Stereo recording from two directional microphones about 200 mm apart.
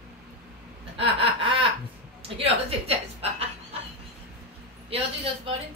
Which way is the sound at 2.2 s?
30° right (ahead or behind).